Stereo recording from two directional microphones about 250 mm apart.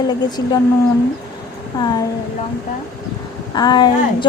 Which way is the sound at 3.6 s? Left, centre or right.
Centre.